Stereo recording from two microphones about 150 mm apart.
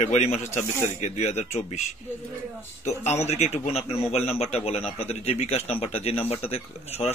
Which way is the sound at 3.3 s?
45° left (ahead or behind).